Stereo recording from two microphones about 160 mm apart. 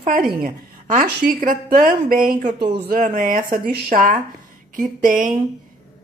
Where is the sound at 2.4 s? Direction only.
30° right (ahead or behind).